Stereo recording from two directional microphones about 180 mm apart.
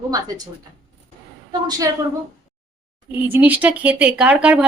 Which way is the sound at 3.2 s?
10° right (ahead or behind).